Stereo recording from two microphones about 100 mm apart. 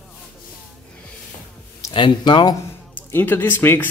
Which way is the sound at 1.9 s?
50° left (ahead or behind).